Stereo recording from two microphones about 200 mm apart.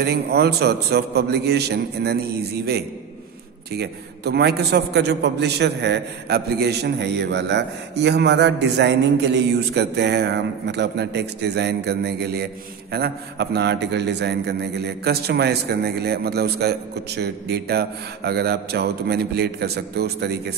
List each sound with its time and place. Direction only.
0.0 s a man's voice: 55° right (ahead or behind)
3.7 s a man's voice: 55° right (ahead or behind)